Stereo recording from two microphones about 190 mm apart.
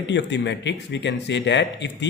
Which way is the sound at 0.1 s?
70° left (ahead or behind).